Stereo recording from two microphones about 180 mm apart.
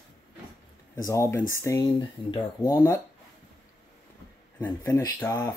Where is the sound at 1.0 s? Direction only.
15° left (ahead or behind).